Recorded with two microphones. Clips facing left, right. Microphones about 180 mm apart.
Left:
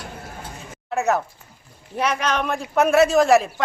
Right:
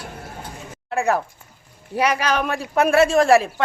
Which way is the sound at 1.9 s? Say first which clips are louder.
Right 2 dB; 10° right (ahead or behind).